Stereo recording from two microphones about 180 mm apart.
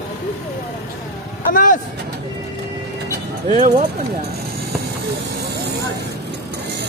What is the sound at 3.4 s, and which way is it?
Speech, 35° right (ahead or behind).